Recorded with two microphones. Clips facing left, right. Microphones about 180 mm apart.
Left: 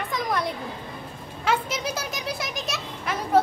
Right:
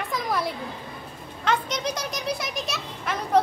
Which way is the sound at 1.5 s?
5° left (ahead or behind).